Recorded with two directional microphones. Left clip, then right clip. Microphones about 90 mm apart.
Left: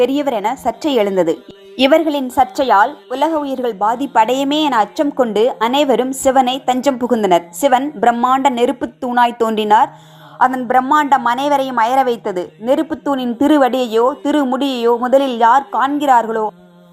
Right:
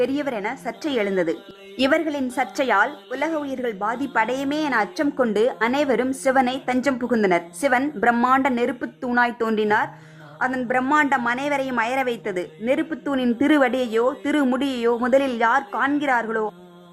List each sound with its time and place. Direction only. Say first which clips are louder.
0.0 s a woman's voice: left 8 dB; 20° left (ahead or behind)
1.8 s a woman's voice: left 8 dB; 20° left (ahead or behind)
2.3 s a woman's voice: left 9 dB; 5° left (ahead or behind)
3.2 s a woman's voice: left 9 dB; 15° left (ahead or behind)
4.3 s a woman's voice: left 9 dB; 40° left (ahead or behind)
4.7 s a woman's voice: left 7 dB; 20° left (ahead or behind)
10.9 s a woman's voice: left 4 dB; 10° left (ahead or behind)